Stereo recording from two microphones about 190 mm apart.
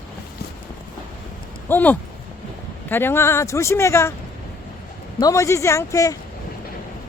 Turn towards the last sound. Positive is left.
turn(degrees=15)  # may be behind; listen again after turning